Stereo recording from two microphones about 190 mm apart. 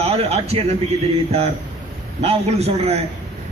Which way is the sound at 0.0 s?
30° right (ahead or behind).